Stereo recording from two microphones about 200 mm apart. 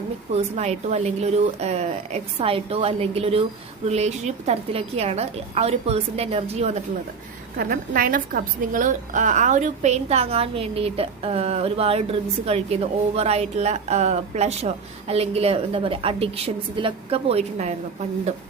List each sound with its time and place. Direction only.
0.3 s a woman's voice: 35° right (ahead or behind)
7.5 s a woman's voice: 45° right (ahead or behind); by 17.7 s 30° right (ahead or behind)